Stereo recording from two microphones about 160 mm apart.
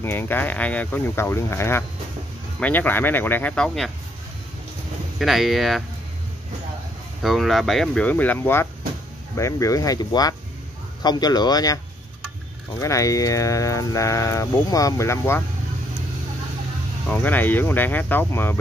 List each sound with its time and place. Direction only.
0.0 s speech: 15° left (ahead or behind)
5.2 s speech: centre (ahead or behind)
7.2 s speech: centre (ahead or behind); by 11.8 s 25° left (ahead or behind)
12.8 s speech: 20° left (ahead or behind)
17.1 s speech: 10° left (ahead or behind)